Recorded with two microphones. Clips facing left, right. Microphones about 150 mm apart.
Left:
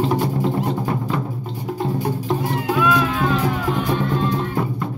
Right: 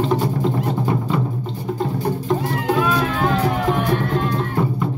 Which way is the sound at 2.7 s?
40° right (ahead or behind).